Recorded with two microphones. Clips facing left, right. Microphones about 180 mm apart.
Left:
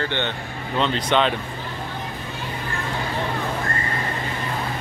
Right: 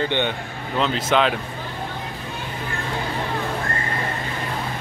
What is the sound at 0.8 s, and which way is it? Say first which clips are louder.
Speech: right 1 dB; 5° right (ahead or behind).